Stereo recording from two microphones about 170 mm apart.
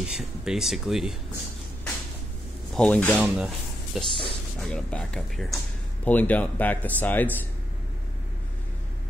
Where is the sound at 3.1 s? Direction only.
10° right (ahead or behind).